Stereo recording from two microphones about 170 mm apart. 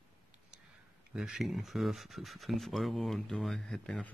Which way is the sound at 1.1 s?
5° right (ahead or behind).